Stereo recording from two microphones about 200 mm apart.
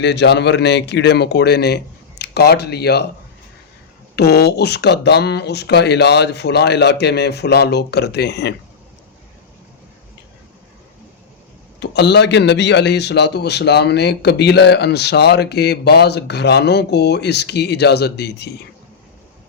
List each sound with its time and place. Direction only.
0.0 s a man's voice: 60° left (ahead or behind)
4.1 s a man's voice: 55° left (ahead or behind)
11.8 s a man's voice: 55° left (ahead or behind)